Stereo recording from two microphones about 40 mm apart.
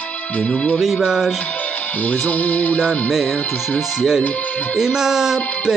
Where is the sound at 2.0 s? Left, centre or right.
Left.